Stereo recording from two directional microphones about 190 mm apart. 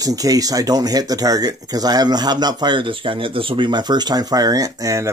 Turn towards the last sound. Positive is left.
turn(degrees=-15)  # may be behind; listen again after turning